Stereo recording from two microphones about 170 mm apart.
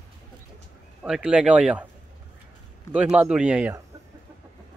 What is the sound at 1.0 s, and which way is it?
Speech, 5° right (ahead or behind).